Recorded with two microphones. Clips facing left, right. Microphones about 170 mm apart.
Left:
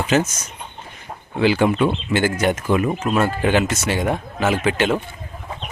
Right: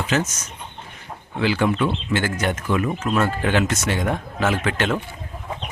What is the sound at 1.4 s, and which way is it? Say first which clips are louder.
Speech: left 4 dB; 15° left (ahead or behind).